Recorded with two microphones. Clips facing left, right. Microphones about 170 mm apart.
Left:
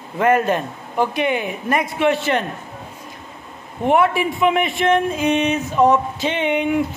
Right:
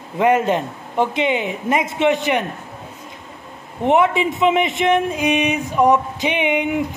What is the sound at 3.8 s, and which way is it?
Speech, 20° right (ahead or behind).